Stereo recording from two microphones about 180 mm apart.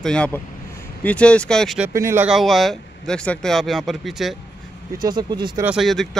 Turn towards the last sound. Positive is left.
turn(degrees=0)  # may be behind; listen again after turning